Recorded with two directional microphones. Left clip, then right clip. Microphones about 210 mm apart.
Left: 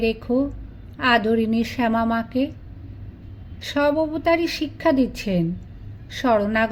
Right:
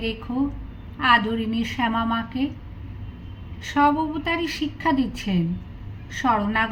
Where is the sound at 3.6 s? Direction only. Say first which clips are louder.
Even; 50° left (ahead or behind).